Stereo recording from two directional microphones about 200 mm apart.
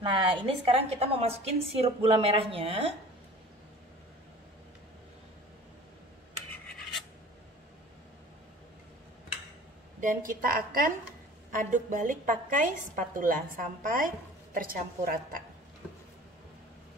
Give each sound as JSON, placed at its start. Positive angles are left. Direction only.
{"t": 0.0, "sound": "a woman's voice", "side_deg": -25}
{"t": 9.9, "sound": "a woman's voice", "side_deg": -40}